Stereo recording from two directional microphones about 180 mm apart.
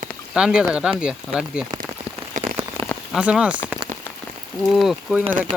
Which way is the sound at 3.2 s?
5° right (ahead or behind).